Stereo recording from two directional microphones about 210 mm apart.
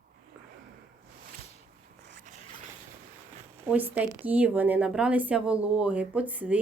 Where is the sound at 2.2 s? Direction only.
35° right (ahead or behind).